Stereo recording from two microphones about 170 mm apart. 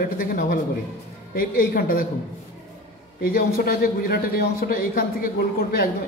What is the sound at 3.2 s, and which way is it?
A man's voice, 60° left (ahead or behind).